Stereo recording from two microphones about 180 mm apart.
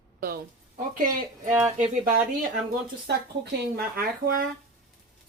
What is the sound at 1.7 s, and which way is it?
Speech, 45° right (ahead or behind).